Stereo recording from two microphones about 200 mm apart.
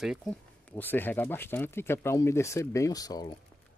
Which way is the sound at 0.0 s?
Centre (ahead or behind).